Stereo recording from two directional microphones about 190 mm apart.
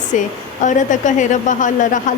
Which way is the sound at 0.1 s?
40° left (ahead or behind).